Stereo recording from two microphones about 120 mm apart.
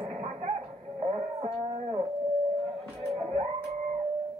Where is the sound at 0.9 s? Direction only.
55° right (ahead or behind).